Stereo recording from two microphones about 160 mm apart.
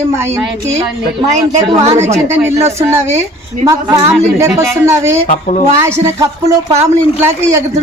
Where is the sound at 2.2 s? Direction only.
15° right (ahead or behind).